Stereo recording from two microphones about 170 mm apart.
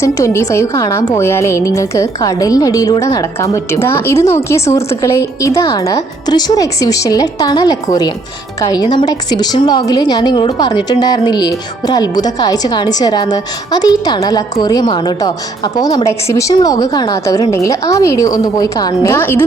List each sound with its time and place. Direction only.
0.0 s a woman's voice: 20° left (ahead or behind)